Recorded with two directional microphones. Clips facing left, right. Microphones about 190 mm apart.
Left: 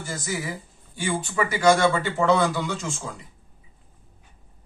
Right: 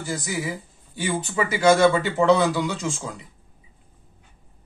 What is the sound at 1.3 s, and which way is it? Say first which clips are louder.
Speech: right 1 dB; 20° right (ahead or behind).